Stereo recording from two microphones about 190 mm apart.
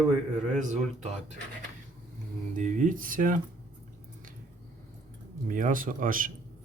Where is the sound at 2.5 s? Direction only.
40° right (ahead or behind).